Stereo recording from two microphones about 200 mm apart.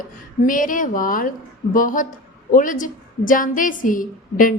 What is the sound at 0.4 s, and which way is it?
A woman's voice, 40° left (ahead or behind).